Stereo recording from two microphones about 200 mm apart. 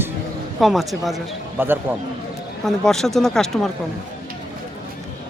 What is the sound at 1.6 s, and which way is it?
Speech, 10° right (ahead or behind).